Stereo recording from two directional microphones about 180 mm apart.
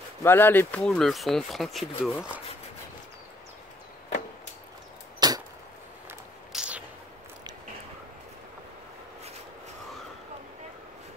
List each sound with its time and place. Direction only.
0.2 s speech: 10° left (ahead or behind)
5.2 s chop: 25° right (ahead or behind)
6.0 s a sound: 5° right (ahead or behind)